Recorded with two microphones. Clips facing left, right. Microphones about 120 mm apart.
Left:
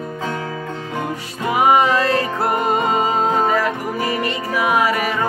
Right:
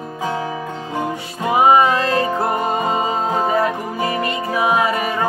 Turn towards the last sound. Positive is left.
turn(degrees=-25)  # may be behind; listen again after turning